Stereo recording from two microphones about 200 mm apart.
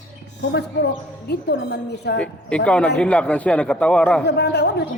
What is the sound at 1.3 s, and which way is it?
Speech, 55° left (ahead or behind).